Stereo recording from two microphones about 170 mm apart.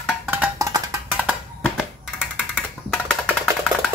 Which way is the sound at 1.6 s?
5° right (ahead or behind).